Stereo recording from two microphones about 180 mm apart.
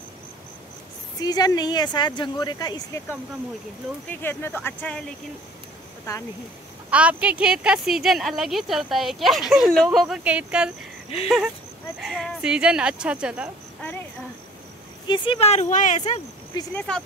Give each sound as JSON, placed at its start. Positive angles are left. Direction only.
{"t": 1.2, "sound": "speech", "side_deg": 20}
{"t": 4.1, "sound": "speech", "side_deg": 10}
{"t": 6.9, "sound": "speech", "side_deg": -5}
{"t": 15.0, "sound": "speech", "side_deg": 25}
{"t": 16.7, "sound": "speech", "side_deg": 5}